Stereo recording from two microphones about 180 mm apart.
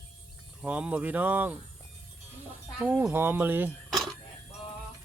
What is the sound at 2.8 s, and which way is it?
Speech, 10° right (ahead or behind).